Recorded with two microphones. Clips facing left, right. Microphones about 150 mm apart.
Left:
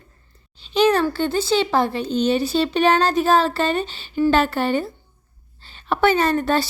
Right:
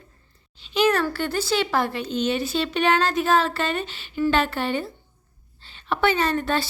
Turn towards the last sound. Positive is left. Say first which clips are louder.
# left 4 dB
turn(degrees=40)  # may be behind; listen again after turning